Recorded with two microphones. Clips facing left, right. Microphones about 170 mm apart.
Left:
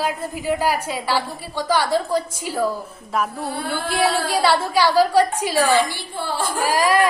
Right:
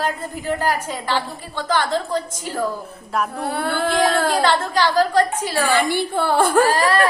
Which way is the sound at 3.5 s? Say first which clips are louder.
Right 4 dB; 60° right (ahead or behind).